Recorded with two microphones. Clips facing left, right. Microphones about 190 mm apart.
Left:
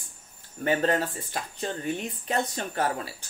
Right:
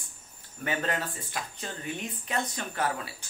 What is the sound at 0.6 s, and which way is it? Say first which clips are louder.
Speech: left 6 dB; 35° left (ahead or behind).